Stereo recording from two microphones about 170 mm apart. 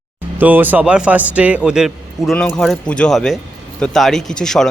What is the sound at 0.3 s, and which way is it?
A man's voice, 10° right (ahead or behind).